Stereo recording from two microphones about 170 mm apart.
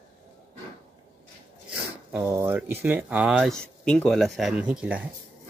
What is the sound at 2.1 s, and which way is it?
Speech, 15° right (ahead or behind).